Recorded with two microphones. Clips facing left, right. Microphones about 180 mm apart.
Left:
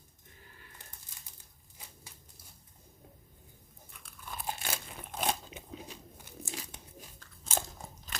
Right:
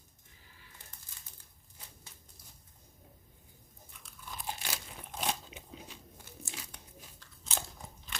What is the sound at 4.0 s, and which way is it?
Crunch, 55° left (ahead or behind).